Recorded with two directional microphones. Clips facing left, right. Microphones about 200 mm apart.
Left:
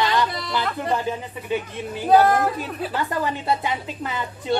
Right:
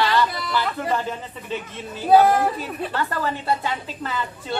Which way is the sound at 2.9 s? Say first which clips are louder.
Left 1 dB; 15° left (ahead or behind).